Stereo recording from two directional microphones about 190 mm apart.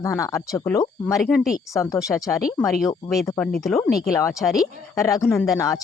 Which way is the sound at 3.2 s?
10° left (ahead or behind).